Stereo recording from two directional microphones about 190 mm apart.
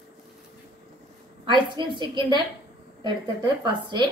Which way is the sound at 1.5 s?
25° right (ahead or behind).